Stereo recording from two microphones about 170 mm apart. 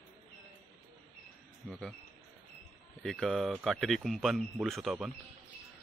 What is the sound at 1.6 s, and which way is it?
Speech, centre (ahead or behind).